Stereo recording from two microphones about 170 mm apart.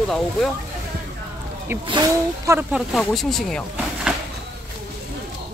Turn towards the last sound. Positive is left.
turn(degrees=0)  # may be behind; listen again after turning